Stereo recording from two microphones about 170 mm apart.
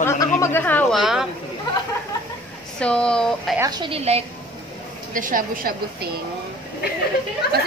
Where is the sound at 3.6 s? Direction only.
25° right (ahead or behind).